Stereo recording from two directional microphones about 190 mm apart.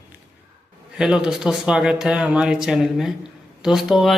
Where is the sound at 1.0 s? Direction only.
5° right (ahead or behind).